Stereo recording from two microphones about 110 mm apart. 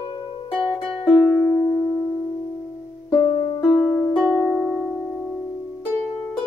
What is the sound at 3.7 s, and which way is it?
Music, 5° left (ahead or behind).